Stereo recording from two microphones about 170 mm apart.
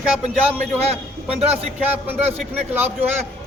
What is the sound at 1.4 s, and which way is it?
Speech, 35° right (ahead or behind).